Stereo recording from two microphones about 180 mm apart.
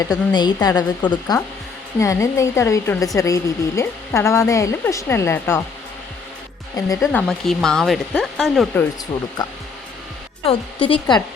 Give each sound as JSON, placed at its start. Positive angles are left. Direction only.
{"t": 0.3, "sound": "a woman's voice", "side_deg": 20}
{"t": 6.7, "sound": "a woman's voice", "side_deg": 20}
{"t": 7.1, "sound": "speech", "side_deg": 5}
{"t": 10.4, "sound": "a woman's voice", "side_deg": 30}